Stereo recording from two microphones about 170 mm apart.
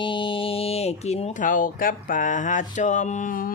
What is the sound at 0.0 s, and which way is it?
Speech, 30° left (ahead or behind).